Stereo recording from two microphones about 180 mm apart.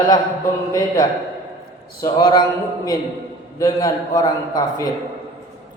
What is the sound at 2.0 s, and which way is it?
Speech, 25° left (ahead or behind).